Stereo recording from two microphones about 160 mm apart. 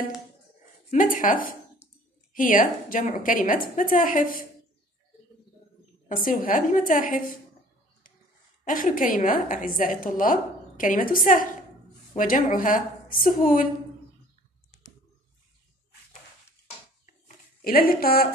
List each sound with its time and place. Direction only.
0.9 s a woman's voice: 60° left (ahead or behind)
1.8 s a sound: 10° right (ahead or behind)
2.3 s a woman's voice: 60° left (ahead or behind)
6.0 s a woman's voice: 60° left (ahead or behind)
8.6 s a woman's voice: 60° left (ahead or behind)
17.6 s a woman's voice: 65° left (ahead or behind)